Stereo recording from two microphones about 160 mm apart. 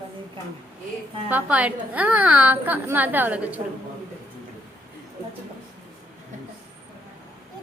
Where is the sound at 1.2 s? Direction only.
10° right (ahead or behind).